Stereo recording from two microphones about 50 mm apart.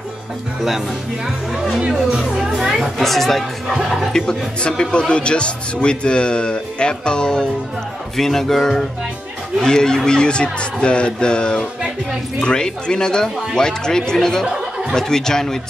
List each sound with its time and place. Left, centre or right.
1.8 s speech: centre
4.1 s a man's voice: centre
14.4 s speech: centre
15.0 s speech: centre